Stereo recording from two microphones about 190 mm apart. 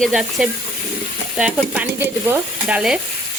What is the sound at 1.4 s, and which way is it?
Stir, 5° right (ahead or behind).